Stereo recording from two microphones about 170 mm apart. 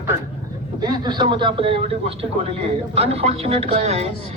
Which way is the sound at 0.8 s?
25° right (ahead or behind).